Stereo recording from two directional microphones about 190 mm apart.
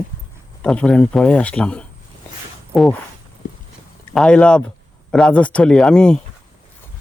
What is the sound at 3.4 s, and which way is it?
Clip-clop, 40° left (ahead or behind).